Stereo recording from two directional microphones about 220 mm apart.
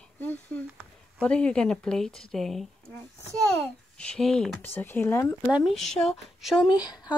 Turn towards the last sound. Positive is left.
turn(degrees=20)  # may be behind; listen again after turning